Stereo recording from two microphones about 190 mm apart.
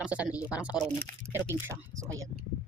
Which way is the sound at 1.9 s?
15° right (ahead or behind).